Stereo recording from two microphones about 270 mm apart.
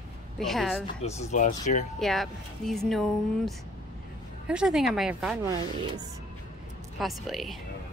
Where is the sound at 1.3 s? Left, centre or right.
Left.